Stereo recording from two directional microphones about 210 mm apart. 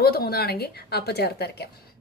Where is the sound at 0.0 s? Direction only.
45° left (ahead or behind).